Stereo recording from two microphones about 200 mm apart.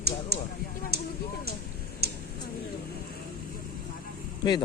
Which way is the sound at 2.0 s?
50° right (ahead or behind).